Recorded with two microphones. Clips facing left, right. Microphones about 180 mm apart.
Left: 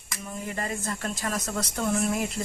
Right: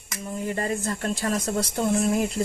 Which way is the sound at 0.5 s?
35° right (ahead or behind).